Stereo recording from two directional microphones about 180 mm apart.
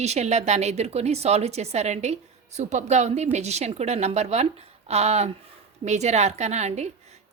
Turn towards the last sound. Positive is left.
turn(degrees=-40)  # may be behind; listen again after turning